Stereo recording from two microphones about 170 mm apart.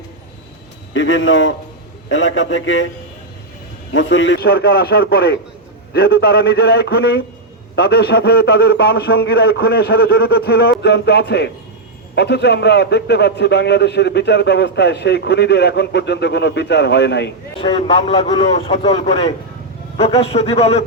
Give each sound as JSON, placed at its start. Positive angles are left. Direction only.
{"t": 2.0, "sound": "a man's voice", "side_deg": 90}
{"t": 4.1, "sound": "a man's voice", "side_deg": 90}
{"t": 17.6, "sound": "a man's voice", "side_deg": 30}